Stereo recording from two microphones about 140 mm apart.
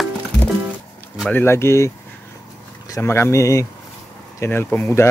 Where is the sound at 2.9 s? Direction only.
20° left (ahead or behind).